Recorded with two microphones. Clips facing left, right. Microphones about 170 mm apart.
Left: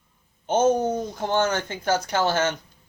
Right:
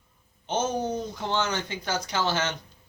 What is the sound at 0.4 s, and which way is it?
Speech, 50° left (ahead or behind).